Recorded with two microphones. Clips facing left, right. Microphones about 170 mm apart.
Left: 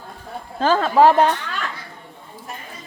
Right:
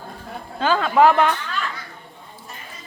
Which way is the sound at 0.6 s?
40° left (ahead or behind).